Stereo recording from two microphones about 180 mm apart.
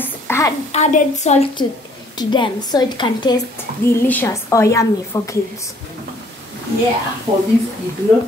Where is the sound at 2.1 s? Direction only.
25° left (ahead or behind).